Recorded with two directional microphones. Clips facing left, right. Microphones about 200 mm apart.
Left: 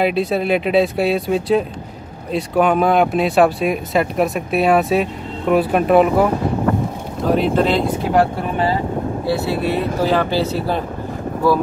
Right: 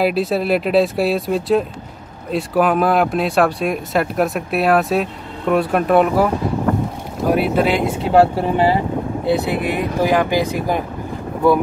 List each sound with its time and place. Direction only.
0.0 s speech: centre (ahead or behind)
7.2 s speech: 10° right (ahead or behind)
7.9 s speech: 25° right (ahead or behind)